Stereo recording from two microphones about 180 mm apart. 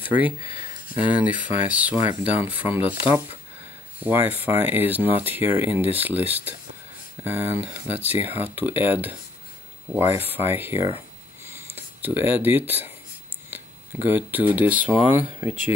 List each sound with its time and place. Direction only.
1.0 s speech: 10° right (ahead or behind)
10.3 s speech: 10° right (ahead or behind)
14.0 s speech: 10° right (ahead or behind)